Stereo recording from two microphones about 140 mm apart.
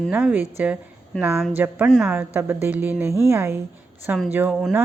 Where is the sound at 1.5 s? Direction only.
15° right (ahead or behind).